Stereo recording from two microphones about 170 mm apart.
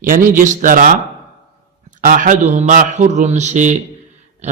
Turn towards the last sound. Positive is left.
turn(degrees=-45)  # may be behind; listen again after turning